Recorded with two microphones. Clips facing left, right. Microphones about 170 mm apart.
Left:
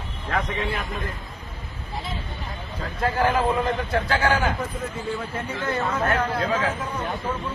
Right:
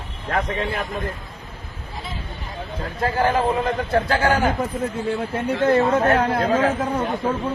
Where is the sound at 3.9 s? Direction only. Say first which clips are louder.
Right 4 dB; 40° right (ahead or behind).